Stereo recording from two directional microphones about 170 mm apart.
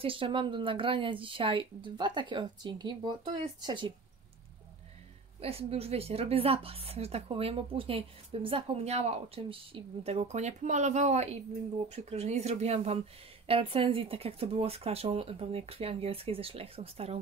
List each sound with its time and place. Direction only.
0.0 s a woman's voice: 30° right (ahead or behind)
5.4 s a woman's voice: 35° right (ahead or behind)